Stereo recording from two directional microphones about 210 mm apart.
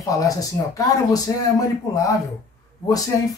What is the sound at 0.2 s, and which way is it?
Speech, 15° left (ahead or behind).